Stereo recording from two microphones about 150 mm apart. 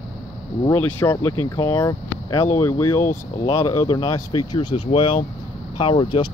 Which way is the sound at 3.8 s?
35° left (ahead or behind).